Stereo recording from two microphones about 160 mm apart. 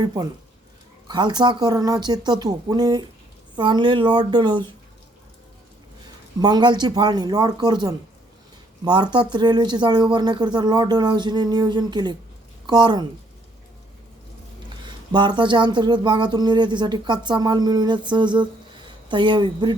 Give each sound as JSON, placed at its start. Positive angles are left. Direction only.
{"t": 0.0, "sound": "speech", "side_deg": -25}
{"t": 6.4, "sound": "speech", "side_deg": -25}
{"t": 14.8, "sound": "speech", "side_deg": -30}